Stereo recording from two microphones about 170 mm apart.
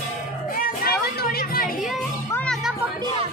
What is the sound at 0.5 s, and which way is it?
Music, 60° left (ahead or behind).